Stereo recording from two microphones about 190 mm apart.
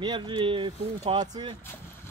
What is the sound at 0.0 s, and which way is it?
Speech, 25° right (ahead or behind).